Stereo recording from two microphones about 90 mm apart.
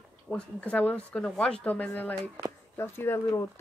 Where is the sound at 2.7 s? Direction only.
30° left (ahead or behind).